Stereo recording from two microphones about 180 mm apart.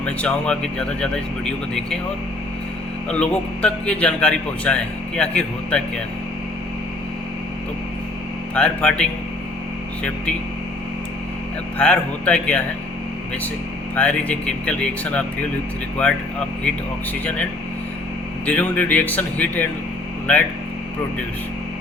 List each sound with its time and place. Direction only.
0.0 s a man's voice: 5° left (ahead or behind)
3.1 s a man's voice: 5° left (ahead or behind)
8.5 s a man's voice: 5° left (ahead or behind)
11.8 s a man's voice: 5° left (ahead or behind)
13.9 s speech: 5° left (ahead or behind)
17.2 s speech: 5° left (ahead or behind)